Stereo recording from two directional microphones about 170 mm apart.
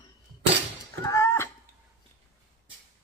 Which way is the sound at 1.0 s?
15° left (ahead or behind).